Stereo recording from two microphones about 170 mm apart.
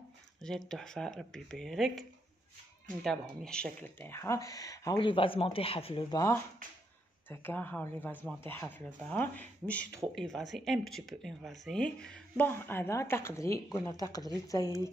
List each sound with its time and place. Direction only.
0.4 s speech: 5° left (ahead or behind); by 14.8 s 20° left (ahead or behind)